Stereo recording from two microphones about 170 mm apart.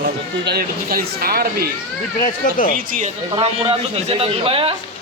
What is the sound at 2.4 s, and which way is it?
Speech, 50° left (ahead or behind).